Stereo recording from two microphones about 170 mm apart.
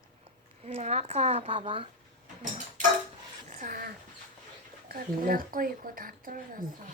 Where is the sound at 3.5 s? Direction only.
55° right (ahead or behind).